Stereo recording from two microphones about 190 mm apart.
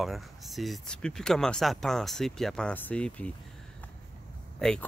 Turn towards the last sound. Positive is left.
turn(degrees=5)  # may be behind; listen again after turning